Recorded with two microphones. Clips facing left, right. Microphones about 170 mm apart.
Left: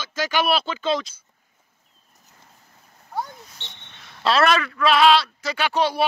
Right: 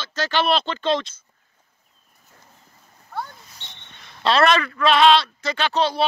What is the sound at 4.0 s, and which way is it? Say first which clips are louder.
A man's voice: right 1 dB; 5° left (ahead or behind).